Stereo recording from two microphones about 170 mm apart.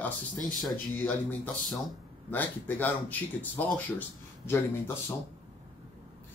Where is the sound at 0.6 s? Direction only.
5° left (ahead or behind).